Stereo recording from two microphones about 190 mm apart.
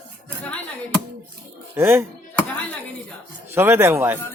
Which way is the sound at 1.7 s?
10° right (ahead or behind).